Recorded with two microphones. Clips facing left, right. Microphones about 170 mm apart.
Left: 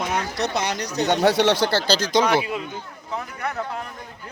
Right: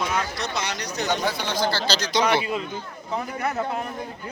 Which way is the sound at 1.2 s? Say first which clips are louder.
Left 7 dB; 75° left (ahead or behind).